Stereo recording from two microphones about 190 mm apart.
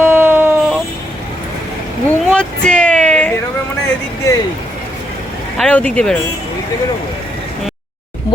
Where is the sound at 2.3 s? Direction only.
5° left (ahead or behind).